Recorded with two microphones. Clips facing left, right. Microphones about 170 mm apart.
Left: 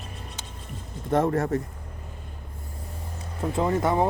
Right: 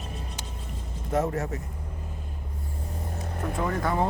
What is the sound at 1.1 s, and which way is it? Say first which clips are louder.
Speech: left 4 dB; 55° left (ahead or behind).